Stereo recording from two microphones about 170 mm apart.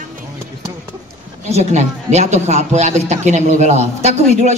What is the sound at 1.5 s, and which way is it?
A man's voice, 40° right (ahead or behind).